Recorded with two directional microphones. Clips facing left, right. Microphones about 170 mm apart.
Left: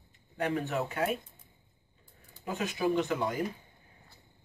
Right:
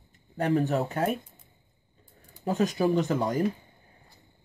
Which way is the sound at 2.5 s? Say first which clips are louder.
Right 6 dB; 40° right (ahead or behind).